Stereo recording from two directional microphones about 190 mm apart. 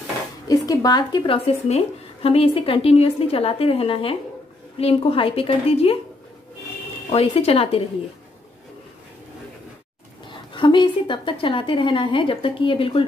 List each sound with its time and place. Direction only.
0.5 s speech: 20° left (ahead or behind)
7.1 s speech: 30° left (ahead or behind)
10.5 s speech: 25° left (ahead or behind)